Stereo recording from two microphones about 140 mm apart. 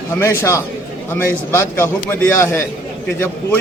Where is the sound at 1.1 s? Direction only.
15° left (ahead or behind).